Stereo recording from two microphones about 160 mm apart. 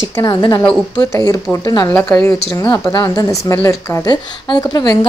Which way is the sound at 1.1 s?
20° left (ahead or behind).